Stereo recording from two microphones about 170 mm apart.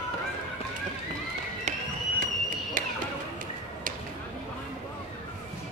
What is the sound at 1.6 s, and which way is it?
Run, 45° right (ahead or behind).